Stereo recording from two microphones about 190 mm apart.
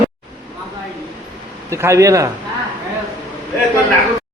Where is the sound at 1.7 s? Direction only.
15° right (ahead or behind).